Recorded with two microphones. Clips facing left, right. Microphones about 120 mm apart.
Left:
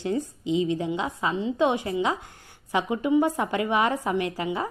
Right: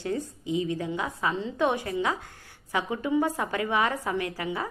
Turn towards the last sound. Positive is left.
turn(degrees=20)  # may be behind; listen again after turning